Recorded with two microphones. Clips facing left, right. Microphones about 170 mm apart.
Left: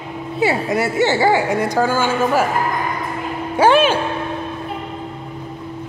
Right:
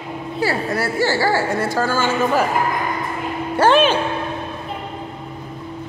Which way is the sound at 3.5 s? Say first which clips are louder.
Left 1 dB; 10° left (ahead or behind).